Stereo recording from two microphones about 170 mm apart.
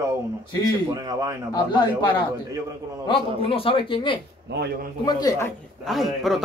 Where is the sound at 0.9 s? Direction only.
20° right (ahead or behind).